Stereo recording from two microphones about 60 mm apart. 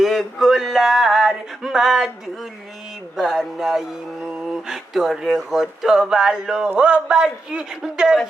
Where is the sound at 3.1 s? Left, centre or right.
Centre.